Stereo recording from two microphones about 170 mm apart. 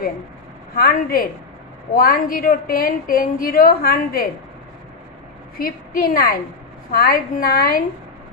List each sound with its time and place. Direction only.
0.7 s a woman's voice: 60° left (ahead or behind)
5.6 s a woman's voice: 55° left (ahead or behind)